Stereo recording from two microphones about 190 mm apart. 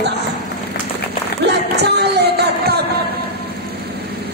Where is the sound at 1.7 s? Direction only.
60° right (ahead or behind).